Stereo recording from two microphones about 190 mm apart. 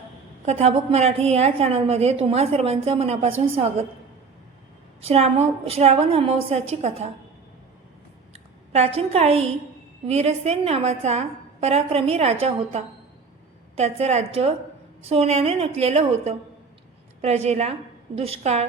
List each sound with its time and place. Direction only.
0.4 s a woman's voice: 30° right (ahead or behind)
4.9 s a woman's voice: 30° right (ahead or behind)
8.3 s a woman's voice: 35° right (ahead or behind)